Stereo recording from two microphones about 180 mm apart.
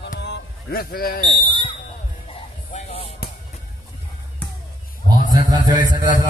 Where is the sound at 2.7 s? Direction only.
35° left (ahead or behind).